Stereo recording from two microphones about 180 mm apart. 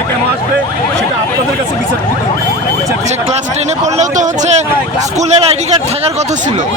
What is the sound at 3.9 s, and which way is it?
Speech, 40° right (ahead or behind).